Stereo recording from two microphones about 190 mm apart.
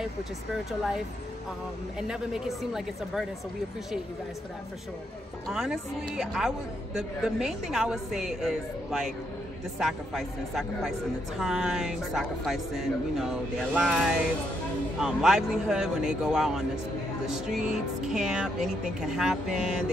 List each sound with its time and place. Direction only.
2.0 s speech: 5° right (ahead or behind)
5.5 s speech: 5° right (ahead or behind)